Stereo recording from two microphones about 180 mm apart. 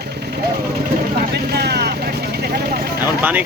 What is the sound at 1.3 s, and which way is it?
Speech, 65° right (ahead or behind).